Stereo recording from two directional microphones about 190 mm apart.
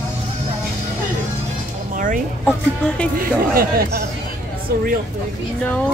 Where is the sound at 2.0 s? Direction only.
45° right (ahead or behind).